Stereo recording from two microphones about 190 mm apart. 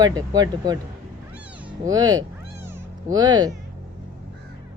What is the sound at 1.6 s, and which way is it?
Cat, 20° right (ahead or behind).